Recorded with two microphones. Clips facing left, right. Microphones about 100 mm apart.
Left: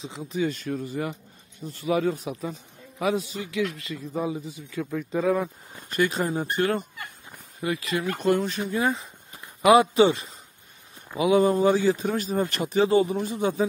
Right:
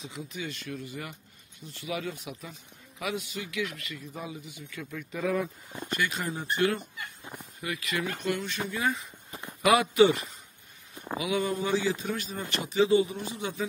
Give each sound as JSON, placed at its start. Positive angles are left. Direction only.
{"t": 0.0, "sound": "a man's voice", "side_deg": 30}
{"t": 7.6, "sound": "a man's voice", "side_deg": 30}